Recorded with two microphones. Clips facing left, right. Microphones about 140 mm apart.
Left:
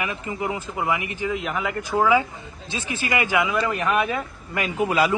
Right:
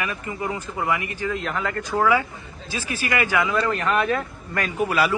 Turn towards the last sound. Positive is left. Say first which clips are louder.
# left 1 dB
turn(degrees=15)  # may be behind; listen again after turning